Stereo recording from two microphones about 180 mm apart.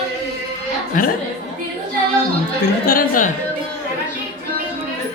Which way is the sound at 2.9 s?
50° left (ahead or behind).